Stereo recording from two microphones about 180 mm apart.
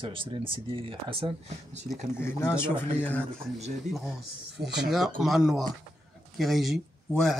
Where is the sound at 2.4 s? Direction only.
15° left (ahead or behind).